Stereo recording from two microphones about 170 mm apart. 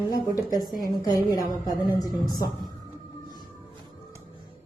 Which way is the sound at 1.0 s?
20° left (ahead or behind).